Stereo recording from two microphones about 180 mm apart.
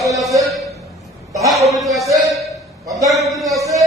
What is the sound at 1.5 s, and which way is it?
Speech, centre (ahead or behind).